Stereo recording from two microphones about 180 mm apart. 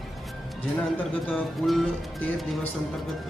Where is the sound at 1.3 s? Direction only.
Centre (ahead or behind).